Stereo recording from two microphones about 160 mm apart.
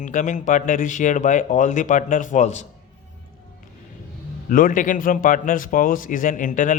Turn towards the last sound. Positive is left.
turn(degrees=55)  # may be behind; listen again after turning